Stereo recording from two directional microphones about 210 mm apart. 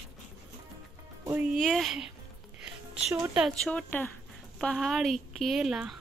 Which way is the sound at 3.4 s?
Centre (ahead or behind).